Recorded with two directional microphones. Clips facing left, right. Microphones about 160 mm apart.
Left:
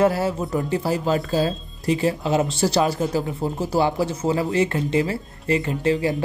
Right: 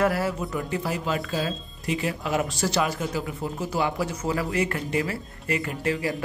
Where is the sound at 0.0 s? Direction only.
25° left (ahead or behind).